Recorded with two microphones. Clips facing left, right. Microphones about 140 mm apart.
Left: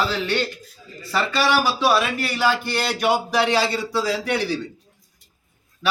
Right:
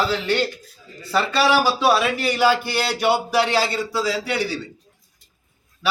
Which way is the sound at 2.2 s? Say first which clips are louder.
Right 3 dB; 10° right (ahead or behind).